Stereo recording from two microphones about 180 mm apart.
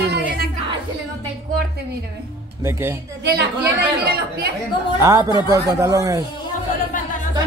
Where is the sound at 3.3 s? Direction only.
60° right (ahead or behind).